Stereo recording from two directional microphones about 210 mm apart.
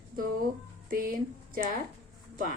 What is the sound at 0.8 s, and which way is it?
Speech, 40° right (ahead or behind).